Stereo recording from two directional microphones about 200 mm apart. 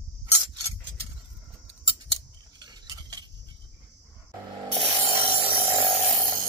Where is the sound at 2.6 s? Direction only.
20° right (ahead or behind).